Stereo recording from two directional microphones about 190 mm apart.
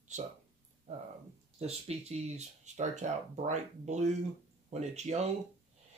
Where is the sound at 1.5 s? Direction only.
35° right (ahead or behind).